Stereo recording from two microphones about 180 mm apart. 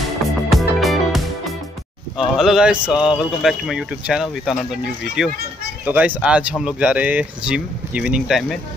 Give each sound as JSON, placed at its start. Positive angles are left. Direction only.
{"t": 0.5, "sound": "music", "side_deg": 0}
{"t": 2.1, "sound": "speech", "side_deg": 0}